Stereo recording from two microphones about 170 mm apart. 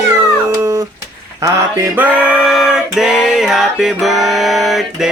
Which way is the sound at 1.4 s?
15° right (ahead or behind).